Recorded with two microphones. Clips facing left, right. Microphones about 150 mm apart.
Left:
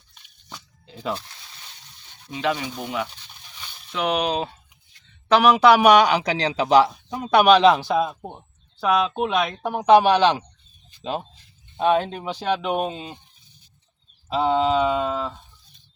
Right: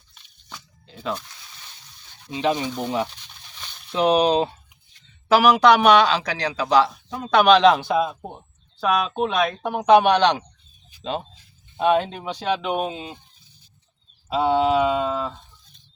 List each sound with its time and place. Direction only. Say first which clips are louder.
0.9 s speech: even; 5° left (ahead or behind)
2.3 s speech: right 2 dB; 20° right (ahead or behind)
3.9 s speech: right 5 dB; 30° right (ahead or behind)
5.3 s speech: even; centre (ahead or behind)
14.3 s a sound: right 1 dB; 5° right (ahead or behind)
15.0 s speech: right 1 dB; centre (ahead or behind)